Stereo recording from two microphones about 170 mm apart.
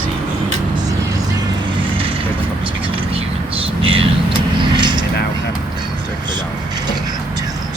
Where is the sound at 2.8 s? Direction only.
35° right (ahead or behind).